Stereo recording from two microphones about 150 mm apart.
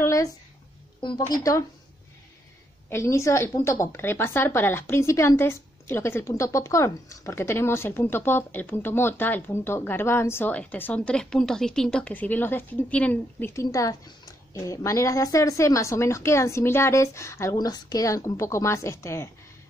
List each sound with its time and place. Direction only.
0.0 s a sound: 20° left (ahead or behind)
1.2 s speech: 20° left (ahead or behind)
2.9 s a woman's voice: 20° left (ahead or behind)